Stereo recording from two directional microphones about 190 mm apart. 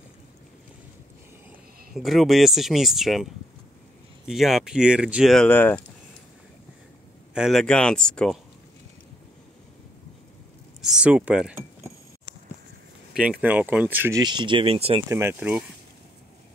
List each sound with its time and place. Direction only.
2.0 s speech: centre (ahead or behind)
7.3 s speech: centre (ahead or behind)
10.8 s a sound: 5° right (ahead or behind)
13.1 s speech: 5° right (ahead or behind)
14.2 s speech: 25° right (ahead or behind)
15.0 s speech: 15° right (ahead or behind)